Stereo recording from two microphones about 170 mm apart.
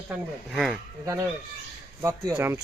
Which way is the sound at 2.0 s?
20° right (ahead or behind).